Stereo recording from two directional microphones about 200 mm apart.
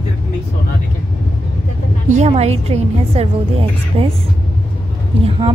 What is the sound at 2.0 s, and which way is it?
A woman's voice, 35° right (ahead or behind).